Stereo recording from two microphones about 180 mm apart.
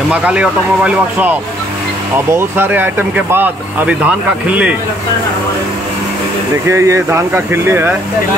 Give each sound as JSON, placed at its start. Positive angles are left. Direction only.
{"t": 0.1, "sound": "speech", "side_deg": -5}
{"t": 6.7, "sound": "speech", "side_deg": -15}